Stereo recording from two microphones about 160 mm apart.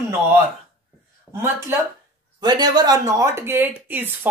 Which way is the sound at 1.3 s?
15° right (ahead or behind).